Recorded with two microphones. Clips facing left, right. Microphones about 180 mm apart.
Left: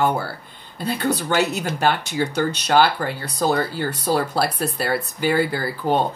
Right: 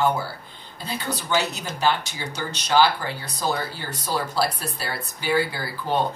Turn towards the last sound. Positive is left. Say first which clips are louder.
# left 5 dB
turn(degrees=50)  # may be behind; listen again after turning